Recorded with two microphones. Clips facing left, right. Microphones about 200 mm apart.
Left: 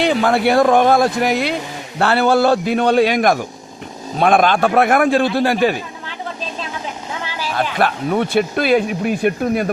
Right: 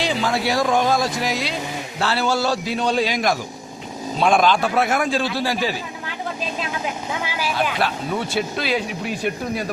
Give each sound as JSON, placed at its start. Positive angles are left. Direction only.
{"t": 0.0, "sound": "speech", "side_deg": 60}
{"t": 7.3, "sound": "vehicle", "side_deg": -10}
{"t": 7.5, "sound": "speech", "side_deg": 55}